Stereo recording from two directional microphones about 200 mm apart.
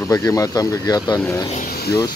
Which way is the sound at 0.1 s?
15° left (ahead or behind).